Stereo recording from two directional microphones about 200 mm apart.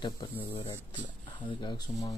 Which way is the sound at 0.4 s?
15° left (ahead or behind).